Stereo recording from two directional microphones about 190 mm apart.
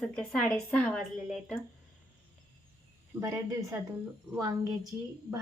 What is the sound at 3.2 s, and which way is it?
A woman's voice, 15° right (ahead or behind).